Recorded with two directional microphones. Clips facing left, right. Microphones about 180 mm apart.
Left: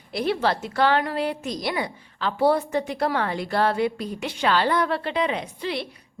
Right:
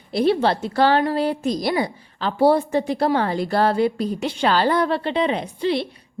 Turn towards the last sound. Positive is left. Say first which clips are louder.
# right 7 dB
turn(degrees=-30)  # may be behind; listen again after turning